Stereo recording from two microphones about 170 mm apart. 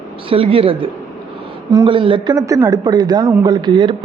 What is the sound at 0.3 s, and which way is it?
Speech, 35° right (ahead or behind).